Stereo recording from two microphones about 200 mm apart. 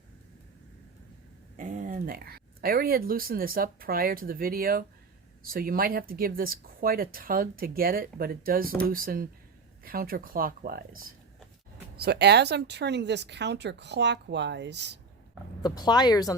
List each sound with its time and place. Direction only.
1.5 s speech: 40° right (ahead or behind); by 14.9 s 60° right (ahead or behind)
15.6 s speech: 20° left (ahead or behind)